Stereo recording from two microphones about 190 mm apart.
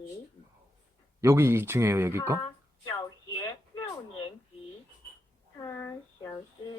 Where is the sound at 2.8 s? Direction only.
20° left (ahead or behind).